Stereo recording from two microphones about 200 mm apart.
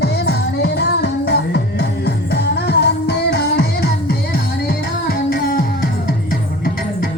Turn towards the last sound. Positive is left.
turn(degrees=45)  # may be behind; listen again after turning